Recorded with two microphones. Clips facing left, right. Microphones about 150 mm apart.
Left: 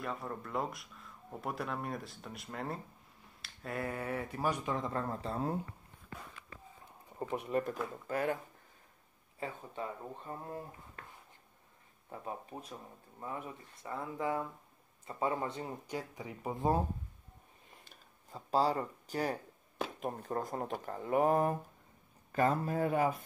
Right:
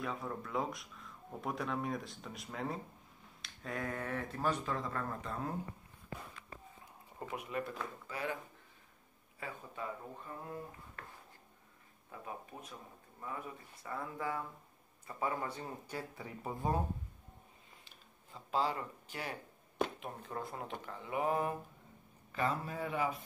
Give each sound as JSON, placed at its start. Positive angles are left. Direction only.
{"t": 0.0, "sound": "speech", "side_deg": 0}
{"t": 7.2, "sound": "speech", "side_deg": 30}
{"t": 9.4, "sound": "speech", "side_deg": 30}
{"t": 12.1, "sound": "speech", "side_deg": 35}
{"t": 13.8, "sound": "speech", "side_deg": 20}
{"t": 17.8, "sound": "a sound", "side_deg": 40}
{"t": 20.0, "sound": "speech", "side_deg": 40}